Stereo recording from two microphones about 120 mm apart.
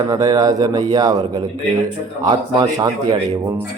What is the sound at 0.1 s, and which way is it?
A man's voice, 30° right (ahead or behind).